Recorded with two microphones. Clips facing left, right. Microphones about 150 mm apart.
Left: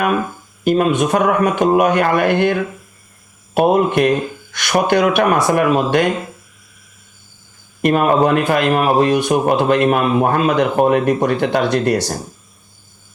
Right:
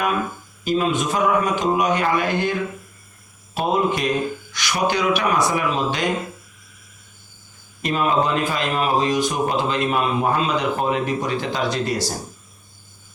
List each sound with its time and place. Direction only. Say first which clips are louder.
0.6 s a man's voice: left 6 dB; 60° left (ahead or behind)
7.8 s a man's voice: left 7 dB; 55° left (ahead or behind)